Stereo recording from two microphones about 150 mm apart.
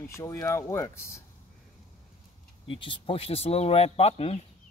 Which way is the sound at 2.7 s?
35° left (ahead or behind).